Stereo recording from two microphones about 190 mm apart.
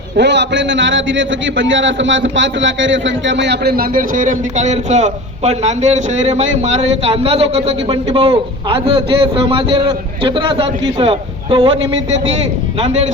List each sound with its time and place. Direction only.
0.2 s a man's voice: 65° right (ahead or behind); by 11.8 s 30° right (ahead or behind)